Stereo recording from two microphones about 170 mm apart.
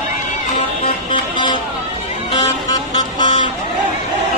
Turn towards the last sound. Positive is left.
turn(degrees=25)  # may be behind; listen again after turning